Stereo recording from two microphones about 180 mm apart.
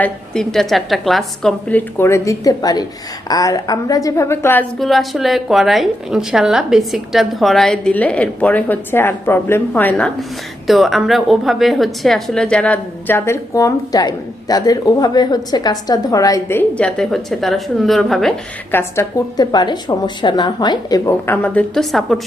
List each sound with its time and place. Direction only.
0.0 s a woman's voice: 5° left (ahead or behind)
4.8 s a woman's voice: centre (ahead or behind)
18.8 s a woman's voice: 15° left (ahead or behind); by 22.2 s centre (ahead or behind)